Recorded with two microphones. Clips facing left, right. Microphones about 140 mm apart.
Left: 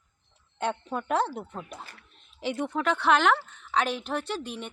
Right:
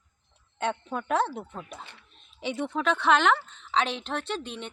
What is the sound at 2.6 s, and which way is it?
A woman's voice, 15° left (ahead or behind).